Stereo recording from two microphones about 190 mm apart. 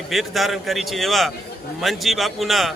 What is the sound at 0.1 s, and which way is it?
A man's voice, centre (ahead or behind).